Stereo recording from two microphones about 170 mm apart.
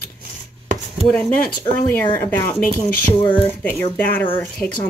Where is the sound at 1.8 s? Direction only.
10° left (ahead or behind).